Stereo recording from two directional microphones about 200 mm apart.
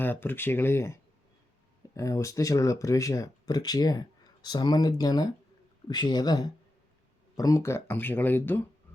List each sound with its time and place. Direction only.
0.0 s speech: 10° left (ahead or behind)
2.0 s speech: 15° left (ahead or behind)